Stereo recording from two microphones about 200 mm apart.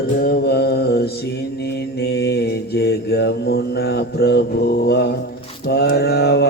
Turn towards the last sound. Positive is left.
turn(degrees=55)  # may be behind; listen again after turning